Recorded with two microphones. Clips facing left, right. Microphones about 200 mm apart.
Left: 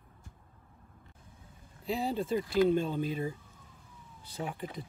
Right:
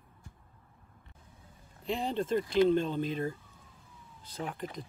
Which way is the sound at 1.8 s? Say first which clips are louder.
Even; 5° left (ahead or behind).